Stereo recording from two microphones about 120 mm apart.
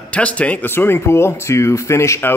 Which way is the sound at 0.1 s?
10° left (ahead or behind).